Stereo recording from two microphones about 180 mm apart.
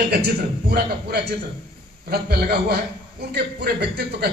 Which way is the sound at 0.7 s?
60° right (ahead or behind).